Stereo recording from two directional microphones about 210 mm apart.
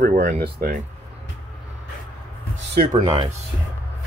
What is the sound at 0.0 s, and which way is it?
Speech, 35° right (ahead or behind).